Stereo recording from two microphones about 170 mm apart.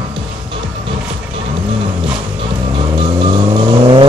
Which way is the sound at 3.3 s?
30° right (ahead or behind).